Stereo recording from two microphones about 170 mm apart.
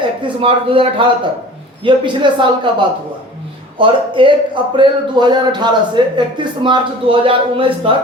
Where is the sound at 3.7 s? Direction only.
30° right (ahead or behind).